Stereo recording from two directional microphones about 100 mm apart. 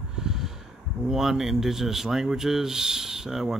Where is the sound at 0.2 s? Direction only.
5° right (ahead or behind).